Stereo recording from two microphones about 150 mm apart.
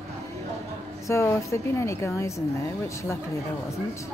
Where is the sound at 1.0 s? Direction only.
15° left (ahead or behind).